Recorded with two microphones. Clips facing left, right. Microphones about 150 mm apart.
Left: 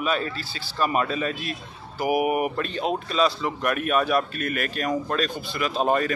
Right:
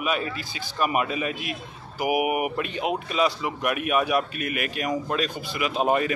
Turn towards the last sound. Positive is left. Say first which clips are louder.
# even
turn(degrees=-15)  # may be behind; listen again after turning